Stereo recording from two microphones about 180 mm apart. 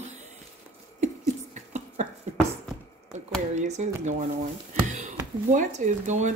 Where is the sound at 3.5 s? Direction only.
40° right (ahead or behind).